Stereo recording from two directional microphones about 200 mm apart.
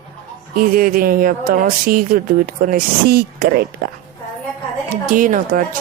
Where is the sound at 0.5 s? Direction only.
45° right (ahead or behind).